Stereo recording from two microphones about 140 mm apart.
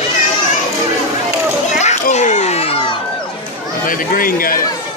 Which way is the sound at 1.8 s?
55° left (ahead or behind).